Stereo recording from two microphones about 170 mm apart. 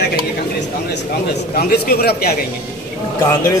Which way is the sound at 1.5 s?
65° left (ahead or behind).